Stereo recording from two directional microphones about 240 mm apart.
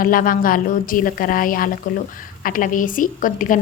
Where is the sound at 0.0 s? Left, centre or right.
Left.